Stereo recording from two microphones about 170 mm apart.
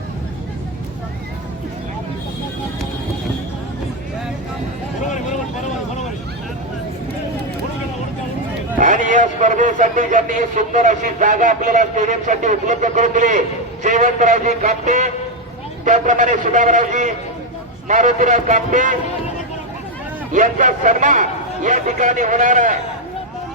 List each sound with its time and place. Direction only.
5.1 s vehicle: 45° left (ahead or behind)
8.7 s a man's voice: 50° right (ahead or behind)
20.3 s a man's voice: 50° right (ahead or behind)